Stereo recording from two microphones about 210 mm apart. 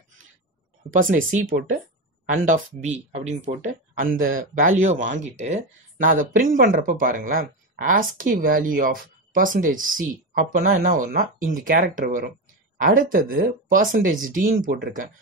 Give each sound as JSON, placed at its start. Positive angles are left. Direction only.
{"t": 1.1, "sound": "speech", "side_deg": -40}